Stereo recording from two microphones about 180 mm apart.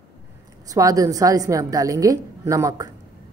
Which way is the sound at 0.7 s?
20° right (ahead or behind).